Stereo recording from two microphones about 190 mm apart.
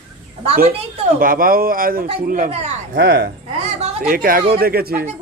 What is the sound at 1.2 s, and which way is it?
A man's voice, 50° right (ahead or behind).